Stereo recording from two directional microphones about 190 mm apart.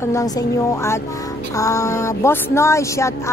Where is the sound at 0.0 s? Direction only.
20° left (ahead or behind).